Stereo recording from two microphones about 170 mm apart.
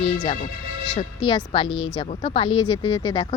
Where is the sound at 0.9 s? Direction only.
25° left (ahead or behind).